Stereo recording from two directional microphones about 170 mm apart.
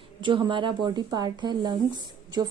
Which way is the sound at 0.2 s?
30° right (ahead or behind).